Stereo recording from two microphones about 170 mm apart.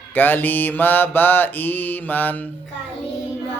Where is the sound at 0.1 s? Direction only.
10° left (ahead or behind).